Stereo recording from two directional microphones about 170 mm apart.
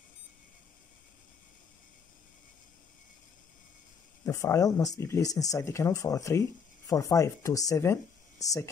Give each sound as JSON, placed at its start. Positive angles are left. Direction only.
{"t": 4.2, "sound": "speech", "side_deg": 20}